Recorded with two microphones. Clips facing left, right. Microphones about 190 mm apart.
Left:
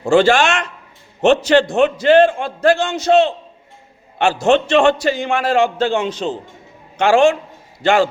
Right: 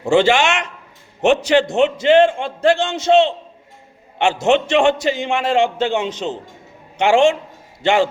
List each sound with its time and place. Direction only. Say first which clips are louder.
0.0 s a man's voice: left 2 dB; 20° right (ahead or behind)